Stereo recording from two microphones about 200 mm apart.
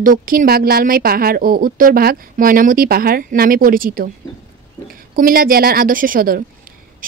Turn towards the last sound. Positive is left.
turn(degrees=-45)  # may be behind; listen again after turning